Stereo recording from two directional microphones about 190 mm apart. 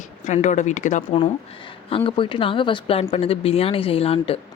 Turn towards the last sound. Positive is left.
turn(degrees=30)  # may be behind; listen again after turning